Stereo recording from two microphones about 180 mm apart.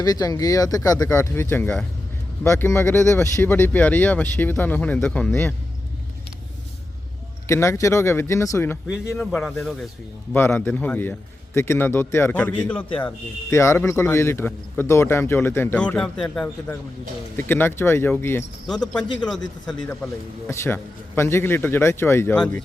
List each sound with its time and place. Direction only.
0.0 s a man's voice: 20° left (ahead or behind)
7.4 s a man's voice: 15° left (ahead or behind)
9.1 s speech: centre (ahead or behind)
10.3 s a man's voice: 10° left (ahead or behind)